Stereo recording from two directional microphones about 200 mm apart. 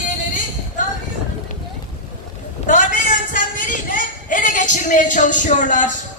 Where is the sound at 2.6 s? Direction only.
40° left (ahead or behind).